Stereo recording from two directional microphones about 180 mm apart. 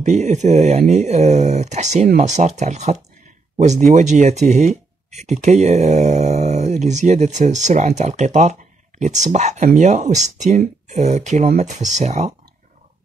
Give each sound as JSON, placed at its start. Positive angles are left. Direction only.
{"t": 0.0, "sound": "speech", "side_deg": -40}